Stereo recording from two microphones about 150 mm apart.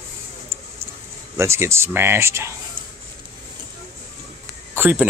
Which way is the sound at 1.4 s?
20° right (ahead or behind).